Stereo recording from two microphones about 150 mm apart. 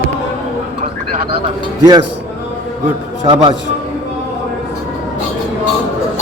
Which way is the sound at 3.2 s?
35° right (ahead or behind).